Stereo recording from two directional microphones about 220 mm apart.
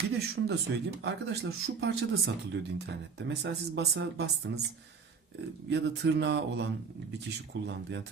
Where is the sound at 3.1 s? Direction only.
50° right (ahead or behind).